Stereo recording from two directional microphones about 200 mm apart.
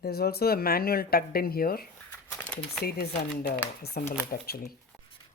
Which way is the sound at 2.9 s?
50° left (ahead or behind).